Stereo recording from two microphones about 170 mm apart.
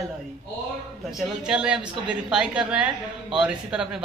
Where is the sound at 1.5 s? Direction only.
5° right (ahead or behind).